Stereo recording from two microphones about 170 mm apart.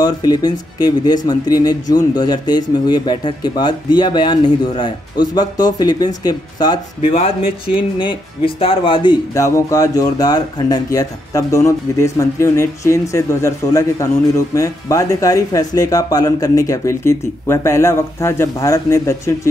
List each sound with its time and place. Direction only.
0.0 s speech: 25° left (ahead or behind)